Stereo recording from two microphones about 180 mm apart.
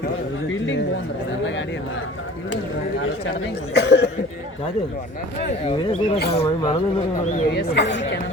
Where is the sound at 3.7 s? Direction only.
70° left (ahead or behind).